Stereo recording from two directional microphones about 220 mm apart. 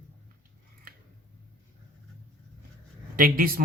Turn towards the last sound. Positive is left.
turn(degrees=-40)  # may be behind; listen again after turning